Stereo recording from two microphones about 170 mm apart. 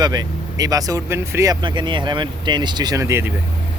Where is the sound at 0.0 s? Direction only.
20° right (ahead or behind).